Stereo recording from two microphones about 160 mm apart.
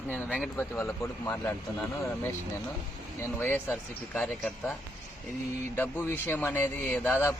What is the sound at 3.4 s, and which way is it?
A man's voice, 5° left (ahead or behind).